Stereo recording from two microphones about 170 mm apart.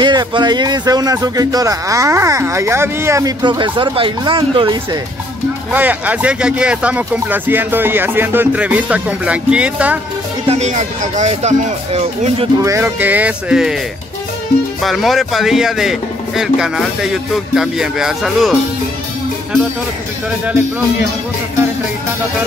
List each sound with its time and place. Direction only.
0.0 s speech: 25° right (ahead or behind)
5.7 s speech: 10° right (ahead or behind)
10.4 s speech: 40° right (ahead or behind)
12.5 s speech: 15° right (ahead or behind)
14.8 s speech: centre (ahead or behind)